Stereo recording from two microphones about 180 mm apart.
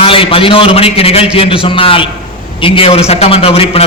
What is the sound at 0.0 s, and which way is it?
A man's voice, 30° left (ahead or behind).